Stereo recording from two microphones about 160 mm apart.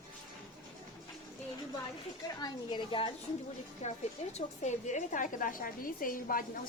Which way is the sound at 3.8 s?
45° left (ahead or behind).